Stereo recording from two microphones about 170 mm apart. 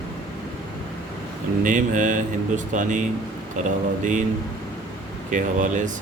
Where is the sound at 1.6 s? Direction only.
50° right (ahead or behind).